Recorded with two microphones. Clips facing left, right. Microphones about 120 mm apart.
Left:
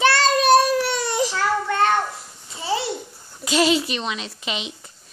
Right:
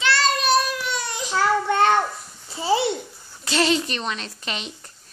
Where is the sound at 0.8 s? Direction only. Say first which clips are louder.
Left 6 dB; 65° left (ahead or behind).